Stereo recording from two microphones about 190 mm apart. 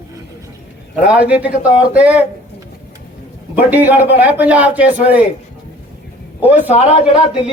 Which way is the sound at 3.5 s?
10° right (ahead or behind).